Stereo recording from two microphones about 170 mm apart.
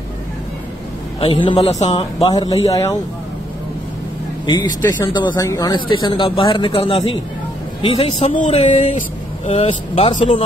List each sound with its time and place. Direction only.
1.2 s a man's voice: 30° left (ahead or behind)
4.5 s a man's voice: 20° left (ahead or behind)
8.3 s a sound: 45° left (ahead or behind)
9.5 s a man's voice: 35° left (ahead or behind)